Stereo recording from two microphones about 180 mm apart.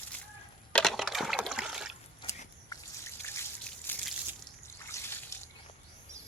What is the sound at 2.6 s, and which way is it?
Drip, 15° left (ahead or behind).